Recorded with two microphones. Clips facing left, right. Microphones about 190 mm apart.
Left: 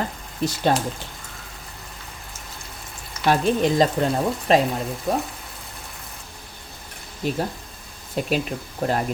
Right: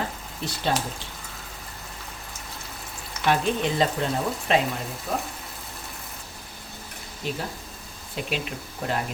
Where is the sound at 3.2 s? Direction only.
40° left (ahead or behind).